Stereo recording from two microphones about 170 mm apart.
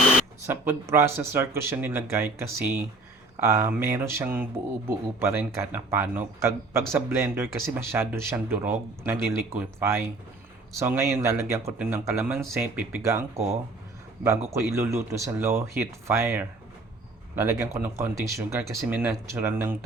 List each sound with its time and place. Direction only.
0.4 s speech: 15° right (ahead or behind)
14.3 s speech: 15° right (ahead or behind)